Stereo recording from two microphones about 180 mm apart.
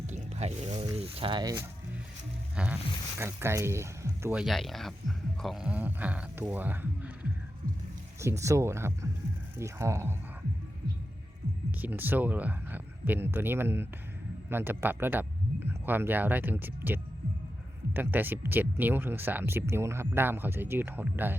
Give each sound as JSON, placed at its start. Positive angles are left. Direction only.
{"t": 0.1, "sound": "a sound", "side_deg": -35}
{"t": 0.9, "sound": "speech", "side_deg": -30}
{"t": 2.6, "sound": "music", "side_deg": -5}
{"t": 3.2, "sound": "speech", "side_deg": -15}
{"t": 4.4, "sound": "speech", "side_deg": 0}
{"t": 11.8, "sound": "speech", "side_deg": -10}